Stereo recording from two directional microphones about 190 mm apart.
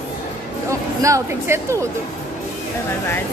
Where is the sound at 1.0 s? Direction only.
15° right (ahead or behind).